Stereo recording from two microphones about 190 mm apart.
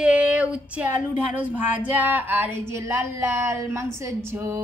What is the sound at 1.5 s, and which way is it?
A woman's voice, 10° right (ahead or behind).